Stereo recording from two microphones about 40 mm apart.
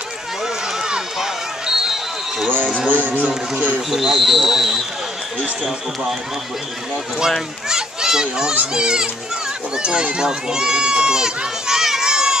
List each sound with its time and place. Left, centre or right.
0.7 s run: centre
2.4 s speech: right
3.9 s speech: centre
7.6 s a sound: centre
8.7 s a child's voice: centre
9.8 s a sound: right